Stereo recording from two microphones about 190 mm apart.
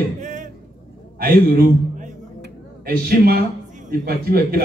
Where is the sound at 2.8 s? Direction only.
55° right (ahead or behind).